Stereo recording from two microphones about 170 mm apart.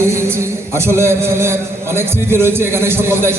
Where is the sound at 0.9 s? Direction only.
15° right (ahead or behind).